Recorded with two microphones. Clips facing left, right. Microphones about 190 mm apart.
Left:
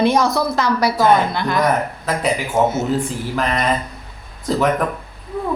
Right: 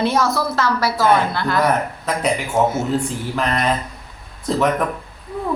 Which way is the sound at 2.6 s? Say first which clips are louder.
Left 1 dB; centre (ahead or behind).